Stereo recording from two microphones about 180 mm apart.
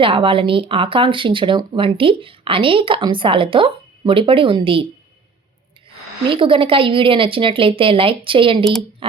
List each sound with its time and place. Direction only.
0.0 s speech: 30° right (ahead or behind)
6.3 s speech: 30° right (ahead or behind)